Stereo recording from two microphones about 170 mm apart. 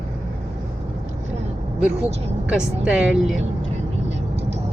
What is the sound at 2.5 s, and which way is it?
Speech, 5° right (ahead or behind).